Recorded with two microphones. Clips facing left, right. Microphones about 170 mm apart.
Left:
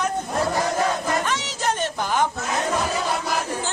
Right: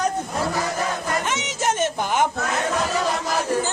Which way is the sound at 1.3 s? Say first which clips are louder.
Right 1 dB; 20° right (ahead or behind).